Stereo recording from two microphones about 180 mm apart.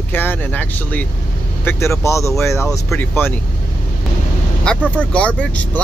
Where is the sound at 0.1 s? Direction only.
10° left (ahead or behind).